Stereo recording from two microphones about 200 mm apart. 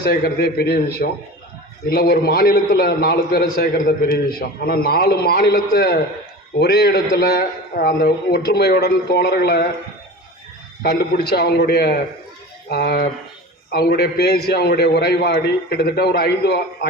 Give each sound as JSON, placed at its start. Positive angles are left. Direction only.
{"t": 0.1, "sound": "a man's voice", "side_deg": 55}
{"t": 10.8, "sound": "a man's voice", "side_deg": 50}